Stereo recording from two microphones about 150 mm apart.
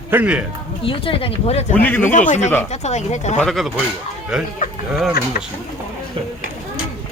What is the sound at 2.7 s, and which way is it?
Speech, 45° left (ahead or behind).